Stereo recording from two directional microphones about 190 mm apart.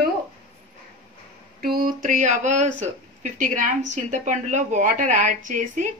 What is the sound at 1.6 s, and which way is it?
Speech, 50° right (ahead or behind).